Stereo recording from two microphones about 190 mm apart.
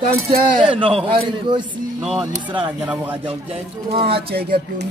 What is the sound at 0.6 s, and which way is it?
A man's voice, 25° right (ahead or behind).